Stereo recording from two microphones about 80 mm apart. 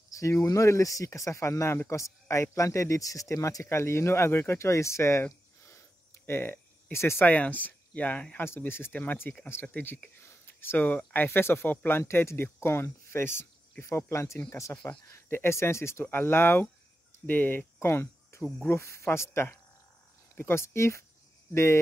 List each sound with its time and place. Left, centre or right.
0.1 s speech: left
5.7 s a sound: left
7.2 s speech: centre
11.2 s speech: left
17.7 s cricket: left
18.7 s speech: left